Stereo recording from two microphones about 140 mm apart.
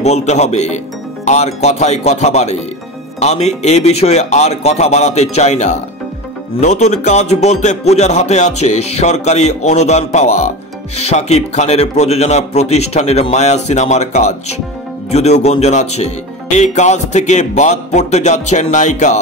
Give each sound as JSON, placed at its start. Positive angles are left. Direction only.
{"t": 0.0, "sound": "speech", "side_deg": 55}